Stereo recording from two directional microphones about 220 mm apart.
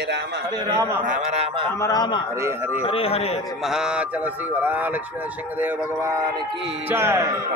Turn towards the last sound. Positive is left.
turn(degrees=-10)  # may be behind; listen again after turning